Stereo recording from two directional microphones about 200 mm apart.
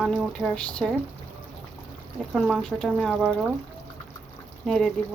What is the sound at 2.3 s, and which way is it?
Speech, centre (ahead or behind).